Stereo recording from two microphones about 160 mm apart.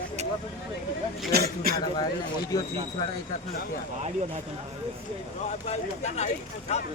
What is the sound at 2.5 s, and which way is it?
Speech, 20° left (ahead or behind).